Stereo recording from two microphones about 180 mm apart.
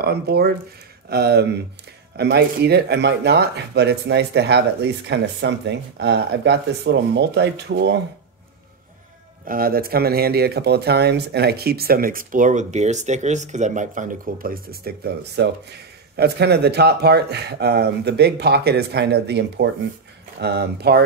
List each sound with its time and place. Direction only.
0.0 s speech: 65° right (ahead or behind)
9.5 s speech: 55° right (ahead or behind)